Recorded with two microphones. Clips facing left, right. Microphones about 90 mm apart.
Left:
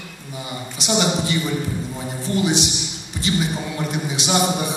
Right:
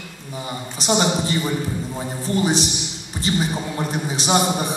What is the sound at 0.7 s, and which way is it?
Speech, 40° right (ahead or behind).